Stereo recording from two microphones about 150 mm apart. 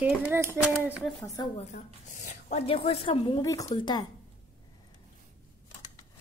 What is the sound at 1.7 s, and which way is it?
A woman's voice, 60° left (ahead or behind).